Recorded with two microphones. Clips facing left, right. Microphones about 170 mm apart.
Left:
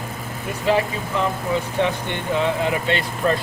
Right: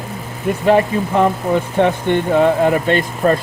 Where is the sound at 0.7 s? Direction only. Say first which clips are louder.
Right 6 dB; 55° right (ahead or behind).